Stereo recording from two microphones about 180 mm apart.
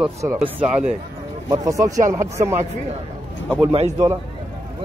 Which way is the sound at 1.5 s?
20° right (ahead or behind).